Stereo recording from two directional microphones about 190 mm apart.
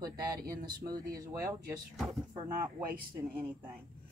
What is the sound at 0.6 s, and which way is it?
Speech, 20° right (ahead or behind).